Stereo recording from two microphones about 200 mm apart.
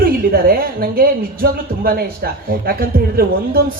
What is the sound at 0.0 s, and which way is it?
A woman's voice, 50° right (ahead or behind).